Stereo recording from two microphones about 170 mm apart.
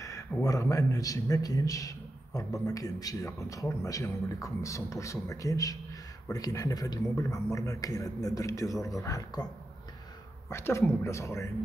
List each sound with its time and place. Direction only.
0.0 s a man's voice: 20° left (ahead or behind)
10.5 s speech: 15° left (ahead or behind)